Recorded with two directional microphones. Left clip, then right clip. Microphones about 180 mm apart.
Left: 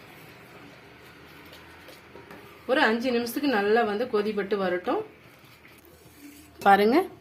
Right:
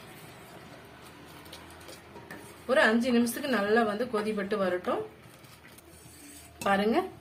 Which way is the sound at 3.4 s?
50° left (ahead or behind).